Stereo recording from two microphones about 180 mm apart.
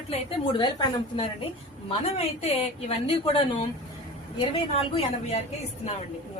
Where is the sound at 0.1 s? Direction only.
30° left (ahead or behind).